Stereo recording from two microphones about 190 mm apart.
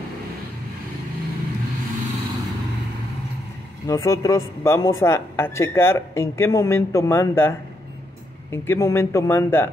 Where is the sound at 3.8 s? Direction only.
15° left (ahead or behind).